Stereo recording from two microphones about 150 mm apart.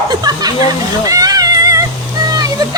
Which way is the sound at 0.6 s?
25° right (ahead or behind).